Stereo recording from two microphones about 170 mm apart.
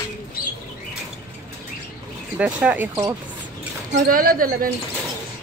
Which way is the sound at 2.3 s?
10° right (ahead or behind).